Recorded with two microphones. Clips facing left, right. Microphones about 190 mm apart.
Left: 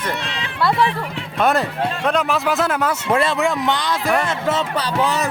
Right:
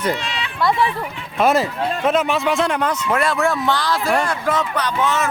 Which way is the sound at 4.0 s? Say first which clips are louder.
Left 1 dB; centre (ahead or behind).